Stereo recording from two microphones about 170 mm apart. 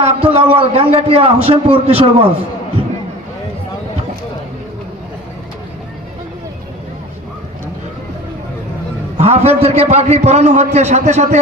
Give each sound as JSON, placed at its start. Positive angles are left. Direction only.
{"t": 0.0, "sound": "a man's voice", "side_deg": -35}
{"t": 9.1, "sound": "a man's voice", "side_deg": -40}